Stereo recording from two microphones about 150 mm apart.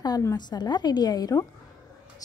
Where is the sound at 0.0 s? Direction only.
25° left (ahead or behind).